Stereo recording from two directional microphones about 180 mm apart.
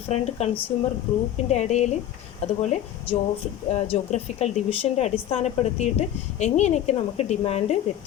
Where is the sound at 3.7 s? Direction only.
35° left (ahead or behind).